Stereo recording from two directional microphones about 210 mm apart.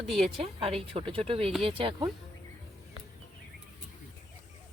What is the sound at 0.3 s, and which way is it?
Speech, 30° right (ahead or behind).